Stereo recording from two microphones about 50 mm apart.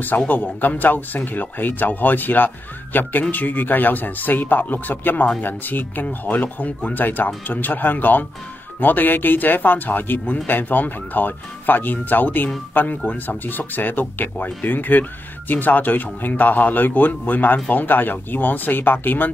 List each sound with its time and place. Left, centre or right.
0.3 s speech: left